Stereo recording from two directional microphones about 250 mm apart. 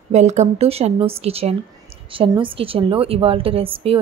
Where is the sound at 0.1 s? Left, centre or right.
Right.